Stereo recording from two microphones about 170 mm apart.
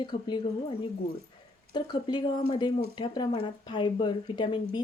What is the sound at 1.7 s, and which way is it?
Speech, 25° left (ahead or behind).